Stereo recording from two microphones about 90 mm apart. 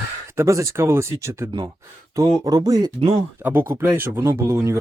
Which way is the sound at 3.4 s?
20° right (ahead or behind).